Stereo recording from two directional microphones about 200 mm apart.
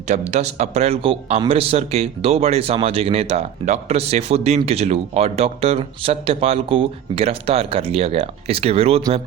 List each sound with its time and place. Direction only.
0.1 s speech: 35° right (ahead or behind)